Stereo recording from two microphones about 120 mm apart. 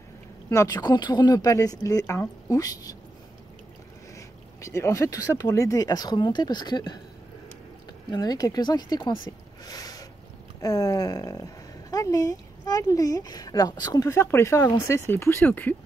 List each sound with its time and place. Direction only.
0.5 s speech: 30° left (ahead or behind)
4.6 s speech: 25° left (ahead or behind)
8.1 s speech: 35° left (ahead or behind)
9.7 s a sound: 30° left (ahead or behind)
10.6 s speech: 30° left (ahead or behind); by 15.7 s 15° left (ahead or behind)